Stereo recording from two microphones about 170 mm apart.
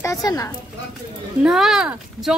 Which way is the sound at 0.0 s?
20° left (ahead or behind).